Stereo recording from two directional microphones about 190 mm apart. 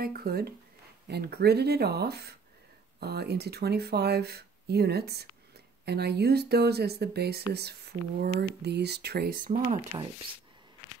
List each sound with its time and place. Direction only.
0.0 s speech: 55° right (ahead or behind)